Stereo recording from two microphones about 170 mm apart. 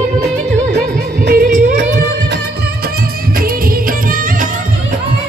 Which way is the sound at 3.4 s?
55° right (ahead or behind).